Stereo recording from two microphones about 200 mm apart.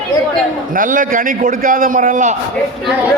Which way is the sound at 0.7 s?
40° right (ahead or behind).